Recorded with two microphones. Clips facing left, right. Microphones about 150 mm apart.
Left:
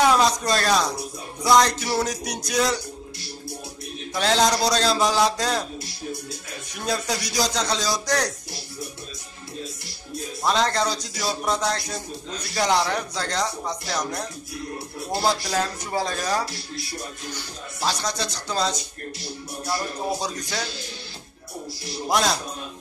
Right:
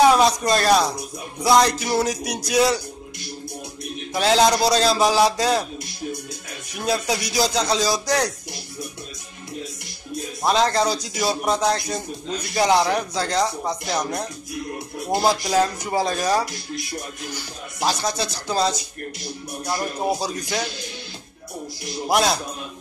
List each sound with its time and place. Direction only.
0.4 s speech: 10° right (ahead or behind)
1.4 s music: 5° right (ahead or behind)
4.1 s speech: 5° right (ahead or behind)
6.9 s speech: 5° right (ahead or behind)
10.4 s speech: 10° right (ahead or behind)
12.5 s speech: 5° right (ahead or behind)
13.8 s music: 20° right (ahead or behind)
15.0 s speech: 15° right (ahead or behind)
20.2 s speech: 10° right (ahead or behind)
22.0 s speech: 10° right (ahead or behind)